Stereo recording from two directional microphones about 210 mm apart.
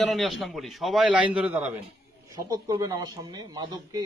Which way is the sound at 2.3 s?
20° right (ahead or behind).